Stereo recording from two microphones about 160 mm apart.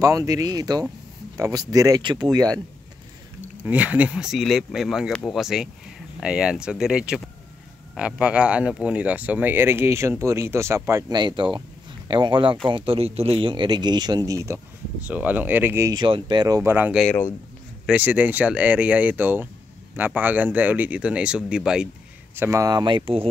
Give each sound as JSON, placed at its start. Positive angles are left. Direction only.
{"t": 0.0, "sound": "speech", "side_deg": -20}
{"t": 3.6, "sound": "speech", "side_deg": -10}
{"t": 17.0, "sound": "speech", "side_deg": 10}
{"t": 17.8, "sound": "speech", "side_deg": -10}
{"t": 22.3, "sound": "speech", "side_deg": -15}